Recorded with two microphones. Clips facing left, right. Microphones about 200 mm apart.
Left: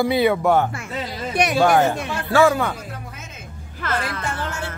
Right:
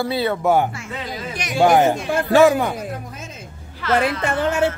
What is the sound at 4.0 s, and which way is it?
Speech, 60° right (ahead or behind).